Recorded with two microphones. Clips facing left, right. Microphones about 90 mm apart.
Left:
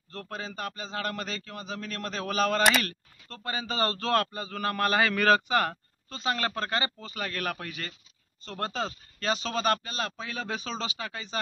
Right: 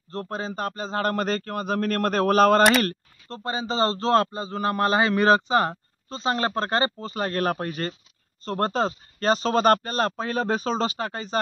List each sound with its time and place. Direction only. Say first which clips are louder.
0.1 s a man's voice: right 7 dB; 35° right (ahead or behind)
2.8 s a man's voice: right 9 dB; 35° right (ahead or behind)